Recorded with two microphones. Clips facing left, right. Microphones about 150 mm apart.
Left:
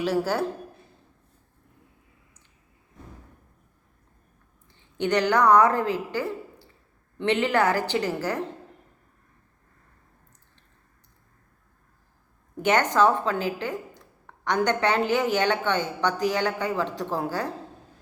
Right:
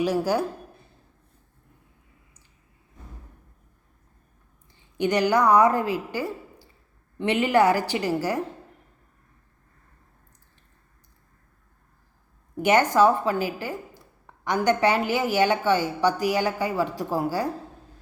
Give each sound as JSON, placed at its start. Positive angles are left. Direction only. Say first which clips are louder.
{"t": 0.0, "sound": "a woman's voice", "louder": "right 2 dB", "side_deg": -15}
{"t": 4.7, "sound": "a woman's voice", "louder": "even", "side_deg": -10}
{"t": 12.6, "sound": "a woman's voice", "louder": "right 2 dB", "side_deg": -10}